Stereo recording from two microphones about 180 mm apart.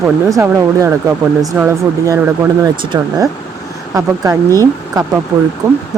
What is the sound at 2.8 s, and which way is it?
Speech, 25° right (ahead or behind).